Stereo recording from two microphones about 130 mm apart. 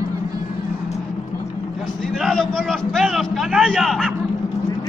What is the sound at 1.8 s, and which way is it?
A man's voice, centre (ahead or behind).